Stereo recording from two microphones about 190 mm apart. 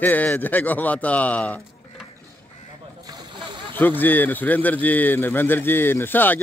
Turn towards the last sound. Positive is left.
turn(degrees=10)  # may be behind; listen again after turning